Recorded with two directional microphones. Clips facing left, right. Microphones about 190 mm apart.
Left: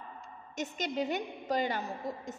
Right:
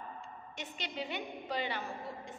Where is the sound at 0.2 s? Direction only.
45° left (ahead or behind).